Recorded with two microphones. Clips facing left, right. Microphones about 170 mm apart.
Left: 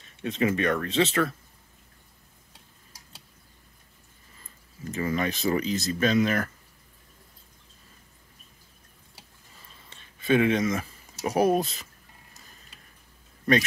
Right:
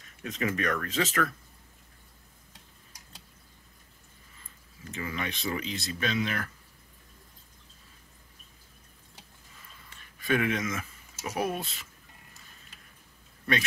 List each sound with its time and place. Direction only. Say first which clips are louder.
0.0 s speech: left 6 dB; 30° left (ahead or behind)
4.9 s speech: left 8 dB; 40° left (ahead or behind)
9.8 s speech: left 5 dB; 25° left (ahead or behind)